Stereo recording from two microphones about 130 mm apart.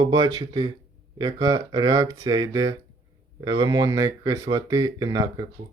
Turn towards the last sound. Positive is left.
turn(degrees=-30)  # may be behind; listen again after turning